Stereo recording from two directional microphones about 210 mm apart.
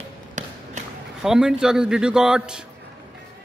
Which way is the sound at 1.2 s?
5° right (ahead or behind).